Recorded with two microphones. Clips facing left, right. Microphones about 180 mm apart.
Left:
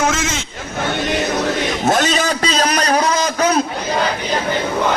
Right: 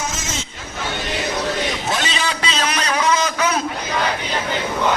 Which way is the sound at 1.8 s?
45° left (ahead or behind).